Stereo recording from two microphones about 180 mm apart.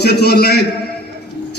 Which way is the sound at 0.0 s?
65° left (ahead or behind).